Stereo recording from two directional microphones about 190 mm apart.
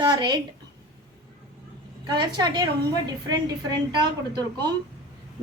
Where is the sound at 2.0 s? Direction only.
25° right (ahead or behind).